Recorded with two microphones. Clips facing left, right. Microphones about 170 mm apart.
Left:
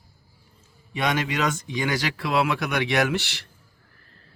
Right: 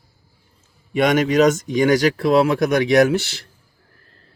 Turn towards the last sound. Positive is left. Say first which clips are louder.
# right 8 dB
turn(degrees=-40)  # may be behind; listen again after turning